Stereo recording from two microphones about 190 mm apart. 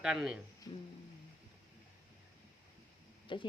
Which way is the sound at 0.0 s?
5° right (ahead or behind).